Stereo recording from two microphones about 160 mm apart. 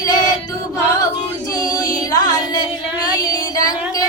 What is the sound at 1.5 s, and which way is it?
Music, 25° left (ahead or behind).